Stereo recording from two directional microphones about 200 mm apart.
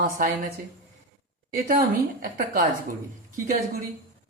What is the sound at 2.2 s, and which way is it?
Speech, 45° right (ahead or behind).